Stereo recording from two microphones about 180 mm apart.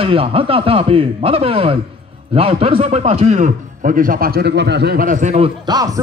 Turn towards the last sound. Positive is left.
turn(degrees=-20)  # may be behind; listen again after turning